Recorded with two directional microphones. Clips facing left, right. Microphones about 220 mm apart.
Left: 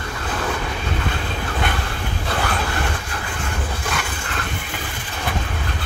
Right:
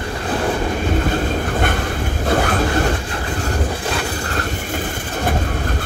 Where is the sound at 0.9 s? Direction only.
45° right (ahead or behind).